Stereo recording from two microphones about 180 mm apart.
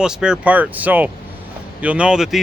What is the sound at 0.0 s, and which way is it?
Speech, 5° right (ahead or behind).